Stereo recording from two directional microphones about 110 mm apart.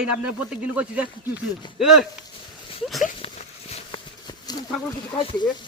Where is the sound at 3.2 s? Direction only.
60° left (ahead or behind).